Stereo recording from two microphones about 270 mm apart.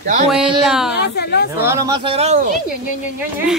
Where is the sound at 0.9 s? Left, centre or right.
Left.